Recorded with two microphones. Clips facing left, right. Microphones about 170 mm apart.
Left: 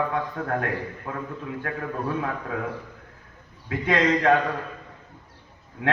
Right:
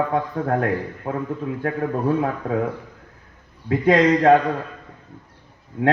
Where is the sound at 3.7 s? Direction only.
35° right (ahead or behind).